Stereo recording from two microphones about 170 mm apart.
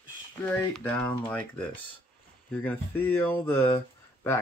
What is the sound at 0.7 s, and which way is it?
Speech, 10° left (ahead or behind).